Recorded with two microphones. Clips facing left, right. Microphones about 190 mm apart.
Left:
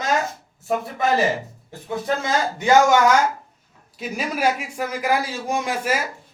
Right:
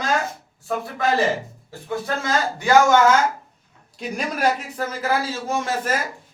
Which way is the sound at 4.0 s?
5° left (ahead or behind).